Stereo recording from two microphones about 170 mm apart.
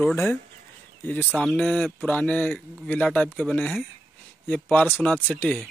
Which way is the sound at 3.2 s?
Centre (ahead or behind).